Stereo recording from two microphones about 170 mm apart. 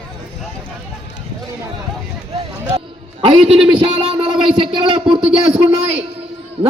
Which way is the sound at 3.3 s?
35° right (ahead or behind).